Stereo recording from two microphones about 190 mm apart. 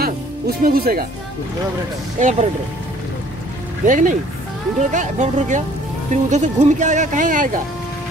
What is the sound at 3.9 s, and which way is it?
Speech, 40° right (ahead or behind).